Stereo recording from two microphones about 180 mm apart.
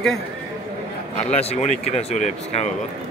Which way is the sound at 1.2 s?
35° left (ahead or behind).